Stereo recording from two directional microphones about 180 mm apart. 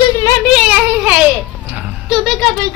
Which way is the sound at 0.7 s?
10° right (ahead or behind).